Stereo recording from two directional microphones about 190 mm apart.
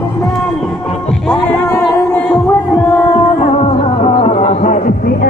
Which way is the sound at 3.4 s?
35° left (ahead or behind).